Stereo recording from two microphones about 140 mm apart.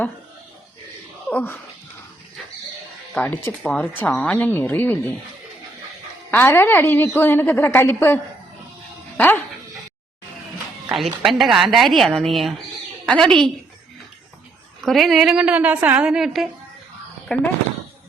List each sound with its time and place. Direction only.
1.3 s a woman's voice: 10° left (ahead or behind)
3.2 s a woman's voice: 10° left (ahead or behind)
6.3 s a woman's voice: 15° left (ahead or behind)
10.9 s a woman's voice: centre (ahead or behind)
14.8 s a woman's voice: centre (ahead or behind)